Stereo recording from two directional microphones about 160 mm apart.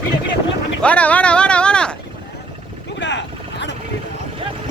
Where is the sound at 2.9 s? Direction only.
90° left.